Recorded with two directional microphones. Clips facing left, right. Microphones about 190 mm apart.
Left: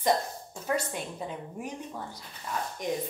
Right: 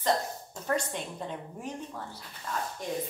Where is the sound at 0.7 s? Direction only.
5° left (ahead or behind).